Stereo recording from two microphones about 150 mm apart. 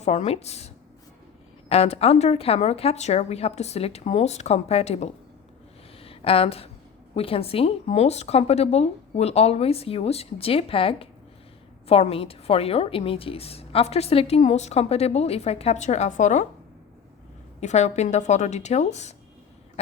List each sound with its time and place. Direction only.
0.0 s a woman's voice: 50° left (ahead or behind)
1.7 s a woman's voice: 40° left (ahead or behind)
17.6 s a woman's voice: 50° left (ahead or behind)